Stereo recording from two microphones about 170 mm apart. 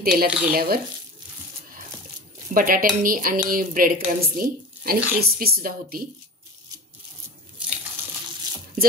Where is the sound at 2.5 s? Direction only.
55° right (ahead or behind).